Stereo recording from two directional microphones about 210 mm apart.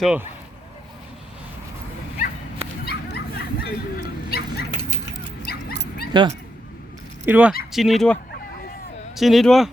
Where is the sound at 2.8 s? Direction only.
50° left (ahead or behind).